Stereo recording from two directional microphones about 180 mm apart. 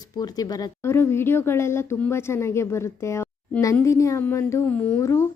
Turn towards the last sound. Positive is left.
turn(degrees=15)  # may be behind; listen again after turning